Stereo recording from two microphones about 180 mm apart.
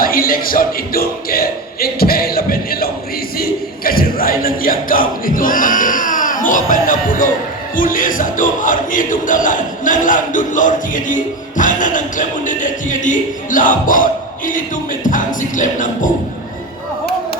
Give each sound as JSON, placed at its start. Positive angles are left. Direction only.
{"t": 0.0, "sound": "speech", "side_deg": 55}
{"t": 7.8, "sound": "music", "side_deg": 50}